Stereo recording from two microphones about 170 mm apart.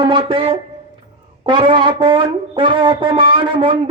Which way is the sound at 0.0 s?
30° right (ahead or behind).